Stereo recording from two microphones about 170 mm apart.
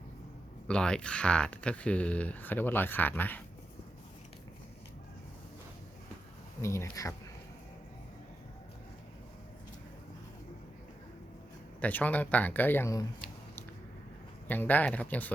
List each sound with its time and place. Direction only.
0.7 s speech: 5° left (ahead or behind)
6.6 s speech: 15° left (ahead or behind)
11.8 s speech: 10° left (ahead or behind)
14.4 s speech: 10° left (ahead or behind)